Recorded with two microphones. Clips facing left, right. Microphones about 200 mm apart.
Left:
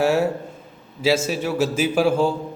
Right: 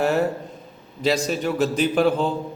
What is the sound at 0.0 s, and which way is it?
A man's voice, 5° left (ahead or behind).